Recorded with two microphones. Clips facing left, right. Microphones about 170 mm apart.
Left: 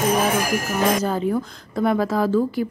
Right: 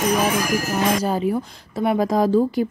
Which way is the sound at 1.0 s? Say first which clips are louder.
Right 1 dB; 10° right (ahead or behind).